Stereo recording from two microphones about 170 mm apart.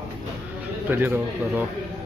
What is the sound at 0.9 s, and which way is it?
Speech, 10° right (ahead or behind).